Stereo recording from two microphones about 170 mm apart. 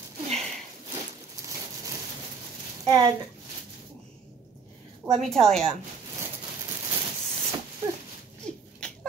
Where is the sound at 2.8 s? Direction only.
20° right (ahead or behind).